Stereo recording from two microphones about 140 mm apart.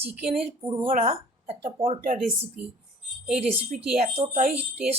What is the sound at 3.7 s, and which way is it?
Speech, 65° right (ahead or behind).